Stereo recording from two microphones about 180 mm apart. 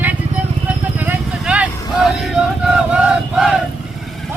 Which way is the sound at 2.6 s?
5° right (ahead or behind).